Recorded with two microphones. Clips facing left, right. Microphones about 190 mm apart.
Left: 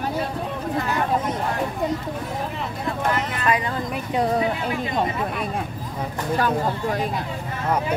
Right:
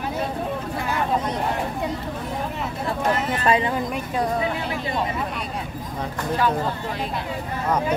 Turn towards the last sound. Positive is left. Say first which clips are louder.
# left 3 dB
turn(degrees=45)  # may be behind; listen again after turning